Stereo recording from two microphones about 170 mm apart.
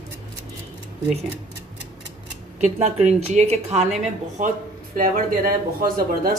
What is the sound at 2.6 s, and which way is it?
Speech, 40° right (ahead or behind).